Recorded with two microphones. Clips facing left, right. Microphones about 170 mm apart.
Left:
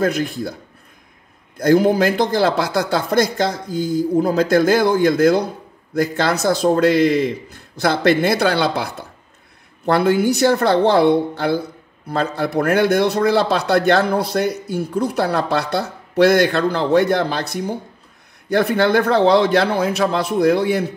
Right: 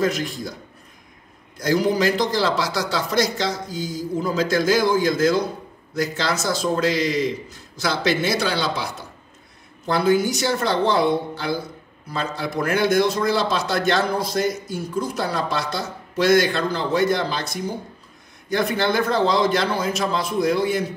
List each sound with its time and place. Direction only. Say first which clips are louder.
0.0 s a man's voice: left 3 dB; 55° left (ahead or behind)
1.6 s a man's voice: left 6 dB; 55° left (ahead or behind)